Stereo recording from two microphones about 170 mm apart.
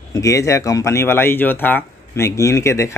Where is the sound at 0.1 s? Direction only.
20° left (ahead or behind).